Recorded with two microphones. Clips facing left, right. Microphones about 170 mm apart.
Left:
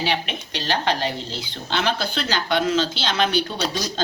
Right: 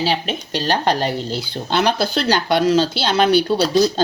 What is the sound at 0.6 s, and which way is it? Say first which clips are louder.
A woman's voice: right 4 dB; 40° right (ahead or behind).